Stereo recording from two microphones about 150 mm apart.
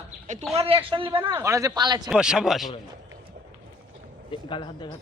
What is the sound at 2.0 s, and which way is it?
Speech, 5° right (ahead or behind).